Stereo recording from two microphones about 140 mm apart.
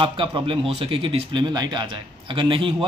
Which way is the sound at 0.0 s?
35° right (ahead or behind).